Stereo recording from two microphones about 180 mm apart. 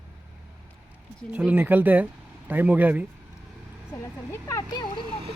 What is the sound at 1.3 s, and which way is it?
Speech, 10° right (ahead or behind).